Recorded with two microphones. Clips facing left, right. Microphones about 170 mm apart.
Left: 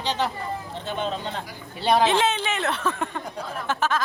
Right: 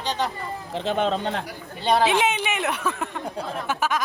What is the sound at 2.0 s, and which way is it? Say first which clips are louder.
A woman's voice: even; 10° right (ahead or behind).